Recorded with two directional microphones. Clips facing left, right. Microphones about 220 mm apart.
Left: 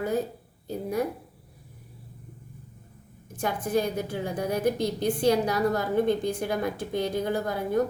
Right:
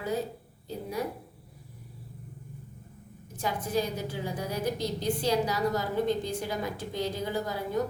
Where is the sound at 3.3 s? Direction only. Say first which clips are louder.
Left 3 dB; 55° left (ahead or behind).